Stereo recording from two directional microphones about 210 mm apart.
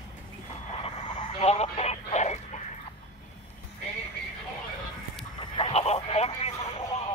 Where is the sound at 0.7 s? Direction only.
25° left (ahead or behind).